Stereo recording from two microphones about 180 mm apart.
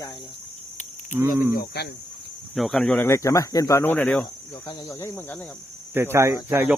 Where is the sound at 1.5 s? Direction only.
65° left (ahead or behind).